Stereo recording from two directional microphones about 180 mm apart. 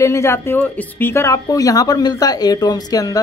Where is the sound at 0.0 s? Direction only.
15° left (ahead or behind).